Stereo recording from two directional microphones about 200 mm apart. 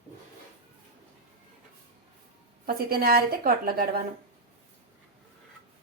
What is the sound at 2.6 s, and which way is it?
A woman's voice, 50° right (ahead or behind).